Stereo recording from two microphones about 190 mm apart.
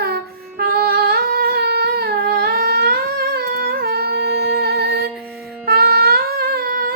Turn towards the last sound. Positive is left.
turn(degrees=-55)  # may be behind; listen again after turning